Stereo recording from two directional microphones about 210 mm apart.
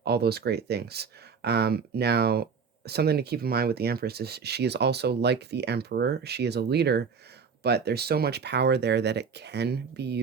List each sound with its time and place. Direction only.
0.0 s speech: 50° right (ahead or behind)